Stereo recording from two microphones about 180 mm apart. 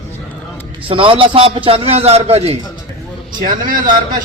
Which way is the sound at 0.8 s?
30° right (ahead or behind).